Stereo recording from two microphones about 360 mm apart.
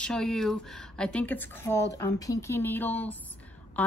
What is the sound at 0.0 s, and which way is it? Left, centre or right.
A woman's voice, centre.